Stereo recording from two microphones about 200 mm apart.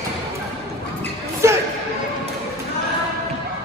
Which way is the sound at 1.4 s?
15° right (ahead or behind).